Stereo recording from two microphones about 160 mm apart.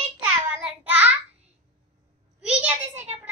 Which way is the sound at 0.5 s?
10° right (ahead or behind).